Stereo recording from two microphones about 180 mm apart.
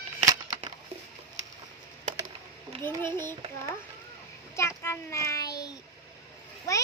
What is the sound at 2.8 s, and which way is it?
Speech, 10° left (ahead or behind).